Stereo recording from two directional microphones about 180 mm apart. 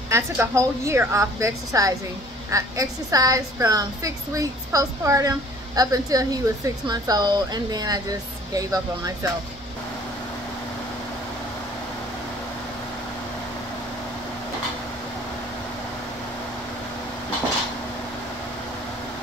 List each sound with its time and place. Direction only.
0.1 s a woman's voice: 15° right (ahead or behind)